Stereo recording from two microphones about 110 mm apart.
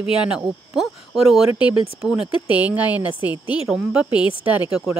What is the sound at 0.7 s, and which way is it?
Speech, centre (ahead or behind).